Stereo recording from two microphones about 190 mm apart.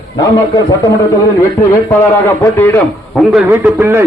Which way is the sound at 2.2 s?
15° left (ahead or behind).